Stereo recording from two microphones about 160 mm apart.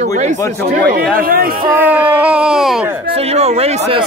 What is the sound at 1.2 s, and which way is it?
Speech, 65° right (ahead or behind).